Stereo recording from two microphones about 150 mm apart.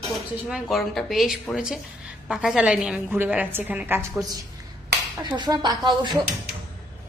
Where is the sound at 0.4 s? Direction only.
Centre (ahead or behind).